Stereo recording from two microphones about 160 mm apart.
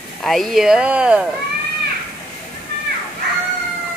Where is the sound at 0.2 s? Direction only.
Centre (ahead or behind).